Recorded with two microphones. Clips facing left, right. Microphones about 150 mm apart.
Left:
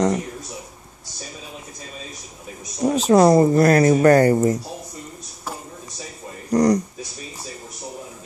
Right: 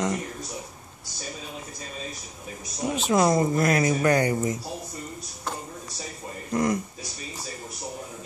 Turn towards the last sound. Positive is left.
turn(degrees=35)  # may be behind; listen again after turning